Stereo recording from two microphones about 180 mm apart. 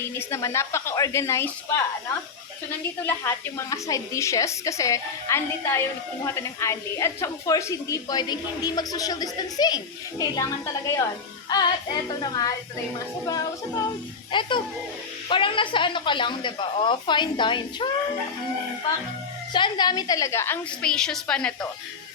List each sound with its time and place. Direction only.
0.0 s a woman's voice: 15° left (ahead or behind)
3.0 s a woman's voice: 15° left (ahead or behind)
19.5 s a woman's voice: 25° left (ahead or behind); by 21.7 s 5° left (ahead or behind)